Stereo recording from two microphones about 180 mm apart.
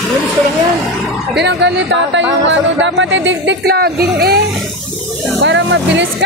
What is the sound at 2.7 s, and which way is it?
Speech, 90° right.